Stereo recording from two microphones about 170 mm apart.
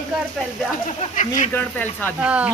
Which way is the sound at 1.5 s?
10° left (ahead or behind).